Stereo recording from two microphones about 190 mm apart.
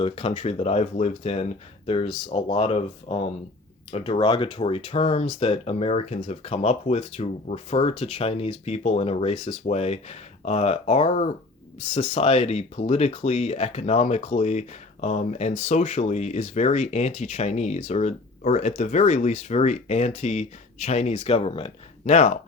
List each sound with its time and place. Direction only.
0.0 s speech: 30° left (ahead or behind)